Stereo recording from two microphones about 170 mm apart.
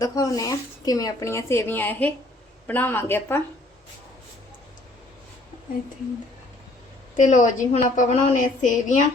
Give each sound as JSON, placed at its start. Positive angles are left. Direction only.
{"t": 0.0, "sound": "speech", "side_deg": 20}
{"t": 7.2, "sound": "a woman's voice", "side_deg": 45}